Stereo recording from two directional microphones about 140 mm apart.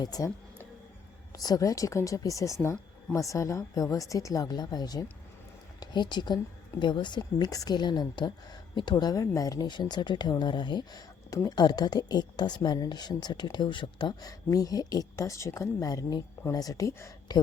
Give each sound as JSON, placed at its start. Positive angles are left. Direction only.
{"t": 0.0, "sound": "speech", "side_deg": 25}
{"t": 1.4, "sound": "speech", "side_deg": 25}